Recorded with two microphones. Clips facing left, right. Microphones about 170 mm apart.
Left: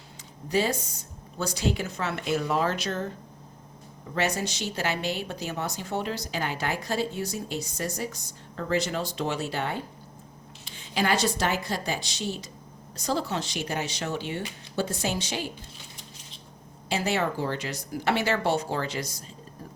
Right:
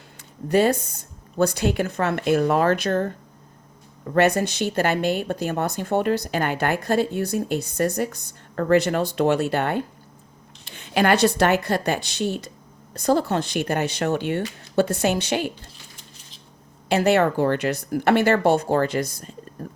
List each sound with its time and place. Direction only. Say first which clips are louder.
0.4 s a woman's voice: right 7 dB; 60° right (ahead or behind)
4.1 s a woman's voice: right 9 dB; 55° right (ahead or behind)
16.9 s a woman's voice: right 9 dB; 60° right (ahead or behind)